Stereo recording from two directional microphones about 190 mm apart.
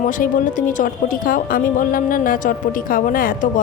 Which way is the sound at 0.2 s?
45° left (ahead or behind).